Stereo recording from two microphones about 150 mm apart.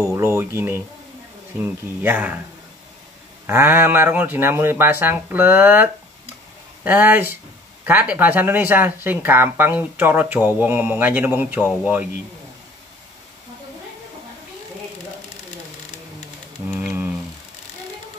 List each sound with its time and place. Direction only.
0.1 s speech: 20° right (ahead or behind)
3.4 s speech: 15° right (ahead or behind)